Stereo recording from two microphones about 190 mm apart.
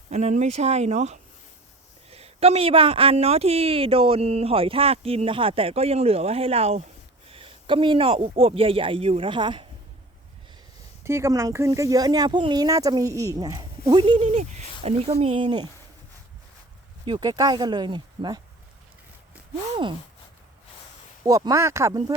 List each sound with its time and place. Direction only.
0.1 s a woman's voice: 35° right (ahead or behind)
11.0 s speech: 15° right (ahead or behind)
17.1 s speech: 20° right (ahead or behind)
21.2 s speech: 20° right (ahead or behind)